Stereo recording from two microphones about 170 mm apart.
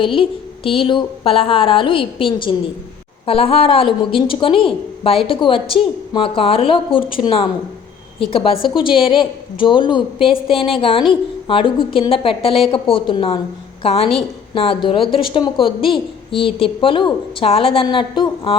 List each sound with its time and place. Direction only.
0.0 s a woman's voice: 30° left (ahead or behind)